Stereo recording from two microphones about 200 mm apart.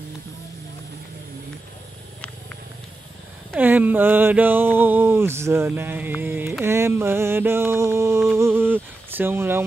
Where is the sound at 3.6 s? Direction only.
10° right (ahead or behind).